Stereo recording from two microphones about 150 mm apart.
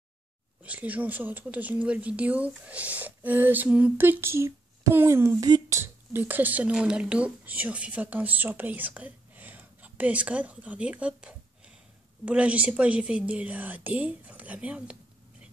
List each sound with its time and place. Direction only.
0.6 s speech: 10° right (ahead or behind)